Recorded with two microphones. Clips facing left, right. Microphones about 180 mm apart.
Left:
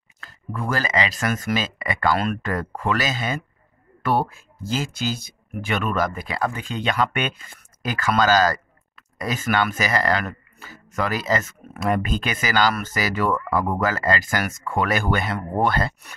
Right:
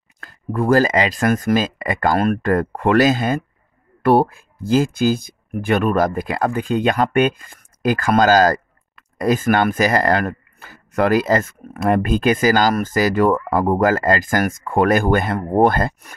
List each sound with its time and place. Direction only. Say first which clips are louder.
0.2 s speech: right 9 dB; 55° right (ahead or behind)